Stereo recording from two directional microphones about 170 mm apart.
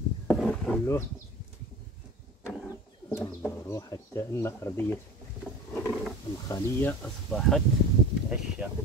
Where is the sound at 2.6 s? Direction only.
10° left (ahead or behind).